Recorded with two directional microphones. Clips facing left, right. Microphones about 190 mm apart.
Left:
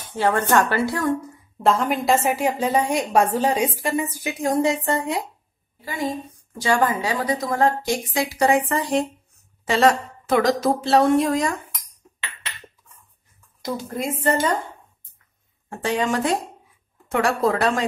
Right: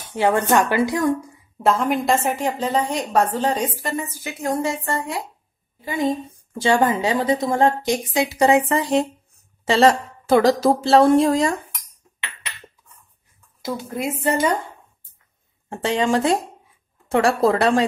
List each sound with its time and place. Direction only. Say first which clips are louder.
0.1 s a woman's voice: right 2 dB; 15° right (ahead or behind)
1.6 s a woman's voice: right 1 dB; centre (ahead or behind); by 5.2 s 20° left (ahead or behind)
5.9 s a woman's voice: right 5 dB; 20° right (ahead or behind)
13.6 s a woman's voice: right 1 dB; 5° right (ahead or behind)
15.7 s a woman's voice: right 3 dB; 25° right (ahead or behind)